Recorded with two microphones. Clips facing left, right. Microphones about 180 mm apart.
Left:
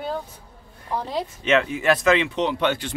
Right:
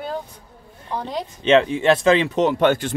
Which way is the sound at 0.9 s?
Centre (ahead or behind).